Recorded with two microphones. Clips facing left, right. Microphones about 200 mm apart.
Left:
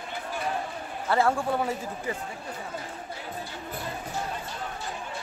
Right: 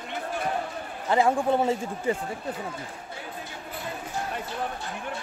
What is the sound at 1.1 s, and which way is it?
Speech, 20° right (ahead or behind).